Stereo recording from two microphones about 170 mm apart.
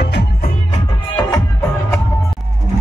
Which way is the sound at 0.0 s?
75° left (ahead or behind).